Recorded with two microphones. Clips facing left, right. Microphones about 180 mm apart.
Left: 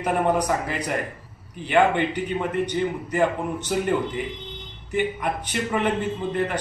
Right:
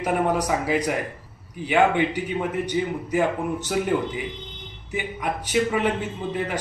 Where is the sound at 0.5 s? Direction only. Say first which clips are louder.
Right 2 dB; 10° right (ahead or behind).